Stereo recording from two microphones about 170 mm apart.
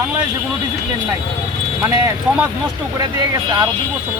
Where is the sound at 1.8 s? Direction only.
15° right (ahead or behind).